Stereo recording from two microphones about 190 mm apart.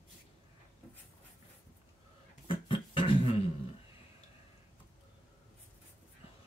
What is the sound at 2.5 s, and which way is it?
Beatboxing, 25° left (ahead or behind).